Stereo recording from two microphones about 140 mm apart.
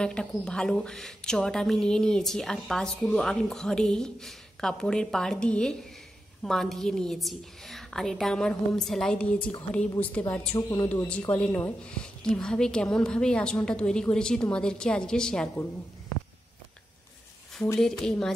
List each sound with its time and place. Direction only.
0.0 s a woman's voice: 5° left (ahead or behind)
17.7 s a woman's voice: 5° left (ahead or behind)